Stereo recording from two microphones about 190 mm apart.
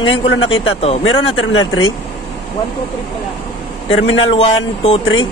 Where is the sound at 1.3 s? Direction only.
90° left.